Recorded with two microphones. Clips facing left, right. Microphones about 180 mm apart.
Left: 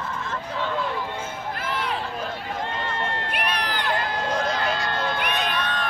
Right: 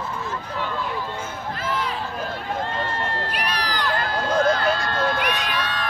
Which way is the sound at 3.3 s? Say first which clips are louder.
Even; 55° left (ahead or behind).